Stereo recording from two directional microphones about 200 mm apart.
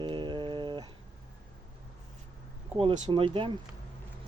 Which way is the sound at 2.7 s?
25° right (ahead or behind).